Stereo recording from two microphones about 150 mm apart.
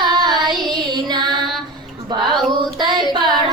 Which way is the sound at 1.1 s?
30° right (ahead or behind).